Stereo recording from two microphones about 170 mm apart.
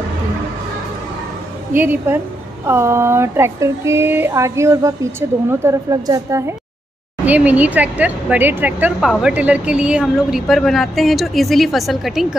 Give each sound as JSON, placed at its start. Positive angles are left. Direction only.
{"t": 1.7, "sound": "a woman's voice", "side_deg": -10}